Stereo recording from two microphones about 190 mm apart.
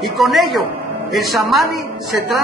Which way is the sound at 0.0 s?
Centre (ahead or behind).